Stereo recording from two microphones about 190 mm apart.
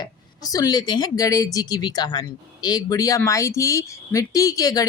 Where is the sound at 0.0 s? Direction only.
20° left (ahead or behind).